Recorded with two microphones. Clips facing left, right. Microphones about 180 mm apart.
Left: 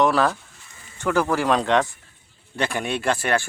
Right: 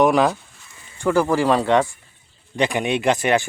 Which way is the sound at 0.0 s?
15° right (ahead or behind).